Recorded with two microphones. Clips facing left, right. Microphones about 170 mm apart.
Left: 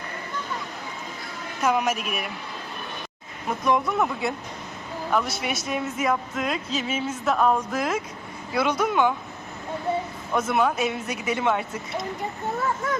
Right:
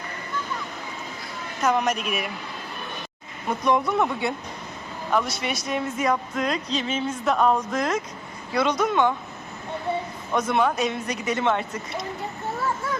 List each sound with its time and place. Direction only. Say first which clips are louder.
1.6 s speech: right 1 dB; 5° left (ahead or behind)
3.6 s speech: right 1 dB; centre (ahead or behind)
10.3 s speech: even; 5° left (ahead or behind)